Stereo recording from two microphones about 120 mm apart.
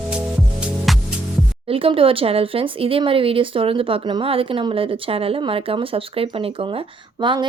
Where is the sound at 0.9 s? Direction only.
Centre (ahead or behind).